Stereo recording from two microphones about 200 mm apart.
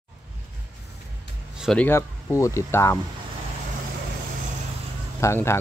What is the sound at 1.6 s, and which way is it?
Speech, 5° left (ahead or behind).